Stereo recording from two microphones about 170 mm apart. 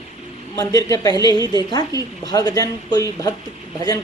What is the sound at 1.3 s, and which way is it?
Speech, 25° right (ahead or behind).